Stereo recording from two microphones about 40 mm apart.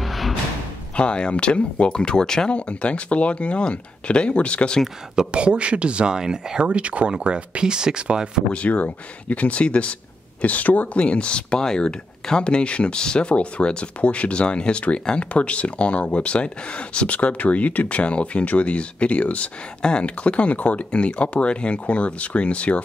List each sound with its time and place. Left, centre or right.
0.0 s music: centre
0.9 s speech: left
2.5 s speech: left
5.3 s speech: right
6.6 s speech: right
8.5 s speech: left
11.0 s speech: left